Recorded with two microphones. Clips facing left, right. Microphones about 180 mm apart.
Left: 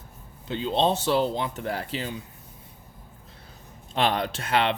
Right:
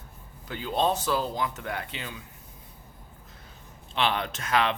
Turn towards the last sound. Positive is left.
turn(degrees=30)  # may be behind; listen again after turning